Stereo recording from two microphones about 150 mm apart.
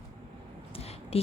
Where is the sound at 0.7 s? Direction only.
40° left (ahead or behind).